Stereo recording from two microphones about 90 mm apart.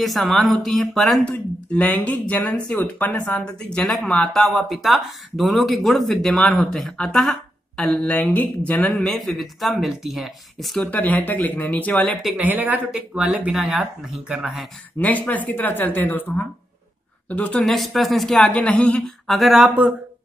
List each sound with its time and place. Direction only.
0.0 s speech: centre (ahead or behind)
1.2 s speech: 15° left (ahead or behind)
10.9 s speech: 20° left (ahead or behind)
12.4 s speech: 20° right (ahead or behind)
15.0 s speech: 15° left (ahead or behind)
17.6 s speech: centre (ahead or behind)